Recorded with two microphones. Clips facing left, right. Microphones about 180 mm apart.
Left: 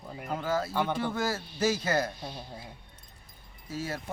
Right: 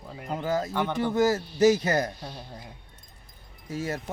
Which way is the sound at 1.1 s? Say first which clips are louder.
Right 8 dB; 45° right (ahead or behind).